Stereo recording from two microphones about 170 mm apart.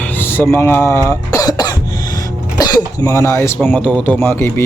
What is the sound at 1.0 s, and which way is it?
Cough, 20° left (ahead or behind).